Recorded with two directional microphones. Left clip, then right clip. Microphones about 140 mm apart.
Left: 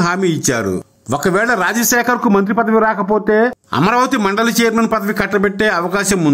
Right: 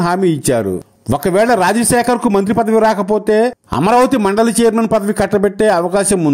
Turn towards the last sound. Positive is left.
turn(degrees=-40)  # may be behind; listen again after turning